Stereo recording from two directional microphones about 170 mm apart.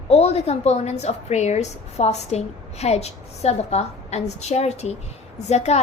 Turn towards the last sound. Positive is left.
turn(degrees=40)  # may be behind; listen again after turning